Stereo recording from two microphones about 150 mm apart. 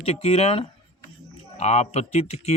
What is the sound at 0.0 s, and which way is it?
A man's voice, 40° left (ahead or behind).